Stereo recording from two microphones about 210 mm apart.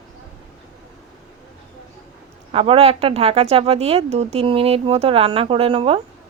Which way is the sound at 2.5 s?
25° right (ahead or behind).